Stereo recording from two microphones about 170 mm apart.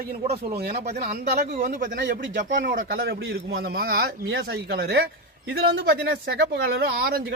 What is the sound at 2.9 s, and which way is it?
A man's voice, 85° right.